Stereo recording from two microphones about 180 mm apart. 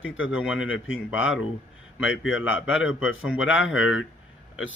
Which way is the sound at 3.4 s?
90° left.